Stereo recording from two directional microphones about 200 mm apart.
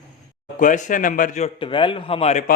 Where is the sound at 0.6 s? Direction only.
40° left (ahead or behind).